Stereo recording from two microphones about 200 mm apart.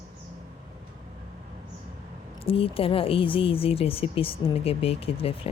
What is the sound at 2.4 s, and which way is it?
Speech, 30° left (ahead or behind).